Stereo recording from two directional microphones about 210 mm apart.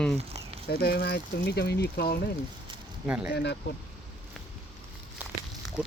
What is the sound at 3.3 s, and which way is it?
Speech, 50° left (ahead or behind).